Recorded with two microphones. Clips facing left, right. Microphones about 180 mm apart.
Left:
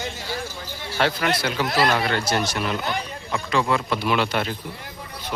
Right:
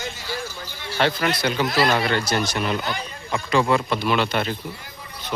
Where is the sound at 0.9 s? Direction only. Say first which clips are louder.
Right 1 dB; 5° left (ahead or behind).